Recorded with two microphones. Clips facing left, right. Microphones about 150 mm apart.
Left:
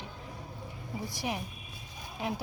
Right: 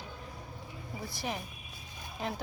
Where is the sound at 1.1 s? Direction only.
15° left (ahead or behind).